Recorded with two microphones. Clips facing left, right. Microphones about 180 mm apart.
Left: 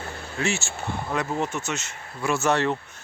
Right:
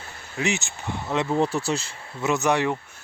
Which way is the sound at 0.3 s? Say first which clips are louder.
Right 1 dB; 15° right (ahead or behind).